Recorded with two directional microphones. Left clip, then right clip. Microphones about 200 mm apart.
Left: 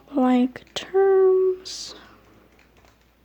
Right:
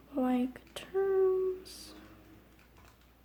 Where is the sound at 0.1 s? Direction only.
50° left (ahead or behind).